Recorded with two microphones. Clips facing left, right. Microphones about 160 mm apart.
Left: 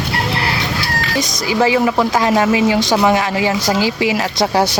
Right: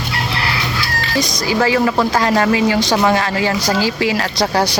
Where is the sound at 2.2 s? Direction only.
10° left (ahead or behind).